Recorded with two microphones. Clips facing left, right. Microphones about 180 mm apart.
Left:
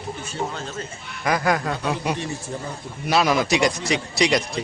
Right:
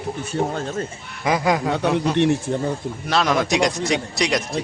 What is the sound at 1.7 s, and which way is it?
Speech, 65° right (ahead or behind).